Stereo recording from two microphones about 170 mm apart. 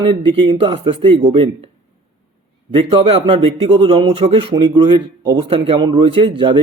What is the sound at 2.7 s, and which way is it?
Speech, 30° right (ahead or behind).